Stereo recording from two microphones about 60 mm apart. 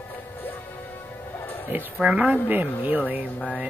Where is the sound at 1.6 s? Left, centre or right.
Right.